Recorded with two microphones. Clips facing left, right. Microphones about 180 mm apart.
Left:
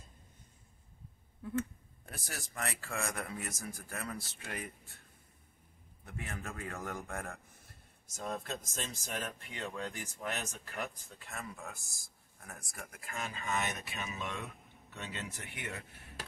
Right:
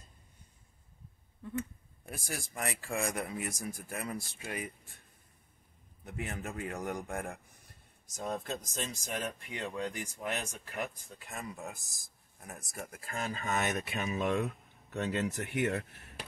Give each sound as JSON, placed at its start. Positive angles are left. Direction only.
{"t": 2.0, "sound": "speech", "side_deg": -10}
{"t": 6.0, "sound": "speech", "side_deg": -20}
{"t": 8.8, "sound": "speech", "side_deg": -15}